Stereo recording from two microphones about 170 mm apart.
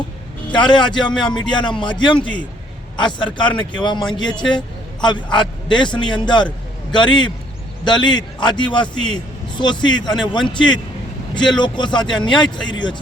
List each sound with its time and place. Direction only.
0.5 s a man's voice: 25° left (ahead or behind)
0.9 s speech: 5° left (ahead or behind)
1.4 s a man's voice: 25° left (ahead or behind)